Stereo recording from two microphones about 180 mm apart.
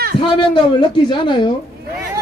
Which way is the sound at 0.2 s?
25° left (ahead or behind).